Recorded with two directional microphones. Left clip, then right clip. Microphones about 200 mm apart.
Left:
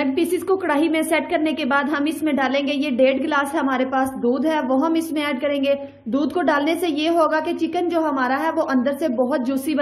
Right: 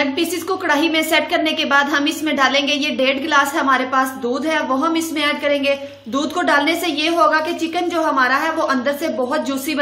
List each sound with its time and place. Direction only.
0.0 s a woman's voice: 25° left (ahead or behind)